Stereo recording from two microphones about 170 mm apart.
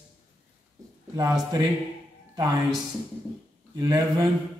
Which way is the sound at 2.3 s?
20° right (ahead or behind).